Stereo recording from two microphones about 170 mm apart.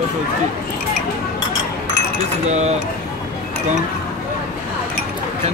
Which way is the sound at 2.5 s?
40° right (ahead or behind).